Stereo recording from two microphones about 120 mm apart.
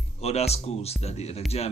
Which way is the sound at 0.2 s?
60° left (ahead or behind).